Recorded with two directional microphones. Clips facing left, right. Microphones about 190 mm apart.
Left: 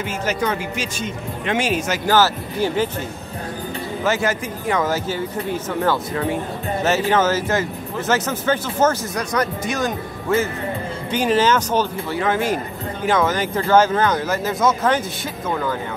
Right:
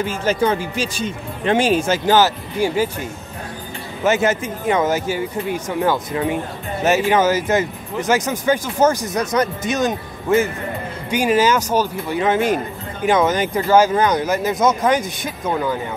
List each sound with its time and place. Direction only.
0.0 s speech: 30° right (ahead or behind)
2.0 s speech: 15° right (ahead or behind)
4.0 s speech: 20° right (ahead or behind)